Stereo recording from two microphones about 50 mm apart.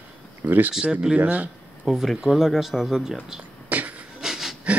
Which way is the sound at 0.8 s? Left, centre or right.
Centre.